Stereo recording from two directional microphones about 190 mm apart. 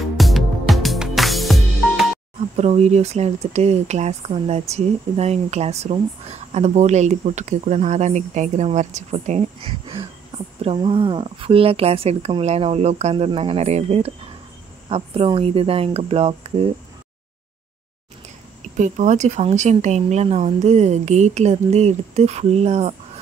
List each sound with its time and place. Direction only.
0.2 s music: centre (ahead or behind)
2.5 s speech: 35° right (ahead or behind)
18.8 s speech: 40° right (ahead or behind)